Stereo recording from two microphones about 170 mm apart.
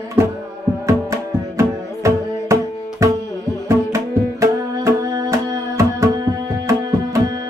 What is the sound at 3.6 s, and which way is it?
Music, 20° right (ahead or behind).